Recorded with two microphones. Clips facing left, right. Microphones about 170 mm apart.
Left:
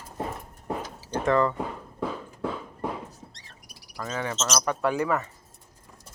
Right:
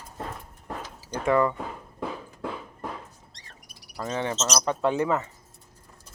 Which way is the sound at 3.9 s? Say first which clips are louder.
Right 2 dB; 25° right (ahead or behind).